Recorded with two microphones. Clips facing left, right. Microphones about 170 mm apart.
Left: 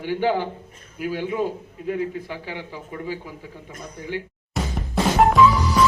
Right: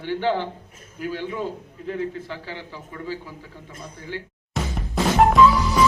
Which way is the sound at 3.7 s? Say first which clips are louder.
Even; 30° right (ahead or behind).